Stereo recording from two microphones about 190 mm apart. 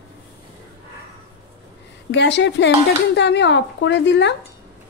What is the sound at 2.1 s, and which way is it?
A woman's voice, 70° left (ahead or behind).